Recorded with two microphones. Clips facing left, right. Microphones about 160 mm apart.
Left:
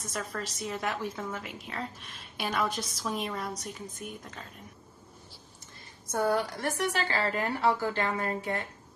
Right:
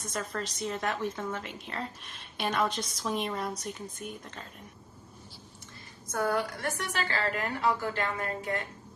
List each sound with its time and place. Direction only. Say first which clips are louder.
0.0 s a woman's voice: right 1 dB; centre (ahead or behind)
6.1 s a woman's voice: left 2 dB; 30° left (ahead or behind)